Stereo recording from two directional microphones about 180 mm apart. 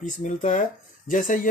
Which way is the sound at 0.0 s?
45° left (ahead or behind).